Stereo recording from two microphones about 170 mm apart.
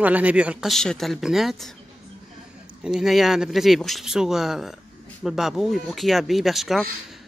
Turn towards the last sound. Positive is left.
turn(degrees=0)  # may be behind; listen again after turning